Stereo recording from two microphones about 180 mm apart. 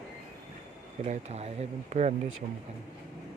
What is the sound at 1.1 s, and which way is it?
Speech, 35° right (ahead or behind).